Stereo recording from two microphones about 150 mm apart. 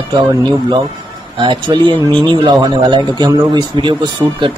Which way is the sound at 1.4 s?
30° right (ahead or behind).